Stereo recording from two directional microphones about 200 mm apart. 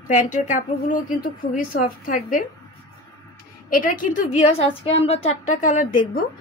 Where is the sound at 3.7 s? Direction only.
45° left (ahead or behind).